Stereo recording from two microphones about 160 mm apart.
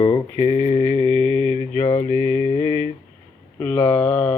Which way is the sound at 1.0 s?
35° right (ahead or behind).